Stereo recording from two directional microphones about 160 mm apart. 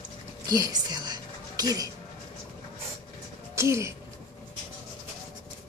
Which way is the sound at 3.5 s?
20° right (ahead or behind).